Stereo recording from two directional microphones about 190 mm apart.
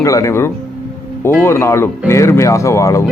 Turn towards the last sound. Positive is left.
turn(degrees=15)  # may be behind; listen again after turning